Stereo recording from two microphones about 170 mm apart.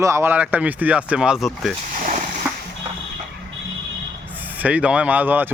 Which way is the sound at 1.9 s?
45° right (ahead or behind).